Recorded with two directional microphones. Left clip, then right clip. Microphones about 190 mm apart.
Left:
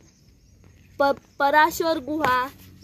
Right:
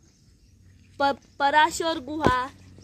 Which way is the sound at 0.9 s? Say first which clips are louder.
Left 3 dB; 15° left (ahead or behind).